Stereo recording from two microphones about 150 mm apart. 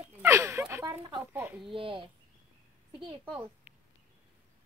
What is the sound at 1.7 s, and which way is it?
Speech, 35° right (ahead or behind).